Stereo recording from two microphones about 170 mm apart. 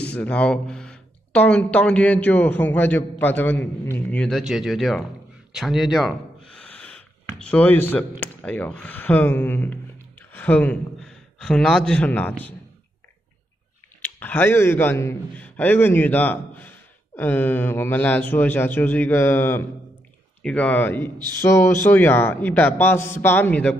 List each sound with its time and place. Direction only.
0.1 s speech: 5° left (ahead or behind)
14.0 s a man's voice: 10° left (ahead or behind)